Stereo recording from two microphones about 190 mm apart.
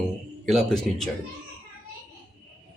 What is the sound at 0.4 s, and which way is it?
Speech, centre (ahead or behind).